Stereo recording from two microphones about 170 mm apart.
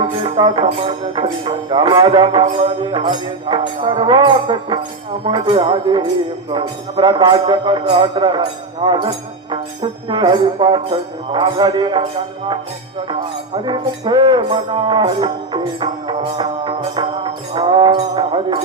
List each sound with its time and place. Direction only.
0.0 s music: 25° right (ahead or behind)
3.5 s speech: 30° right (ahead or behind)
13.7 s speech: 25° right (ahead or behind)